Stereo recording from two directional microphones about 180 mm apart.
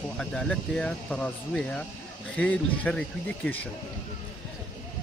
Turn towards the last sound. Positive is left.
turn(degrees=5)  # may be behind; listen again after turning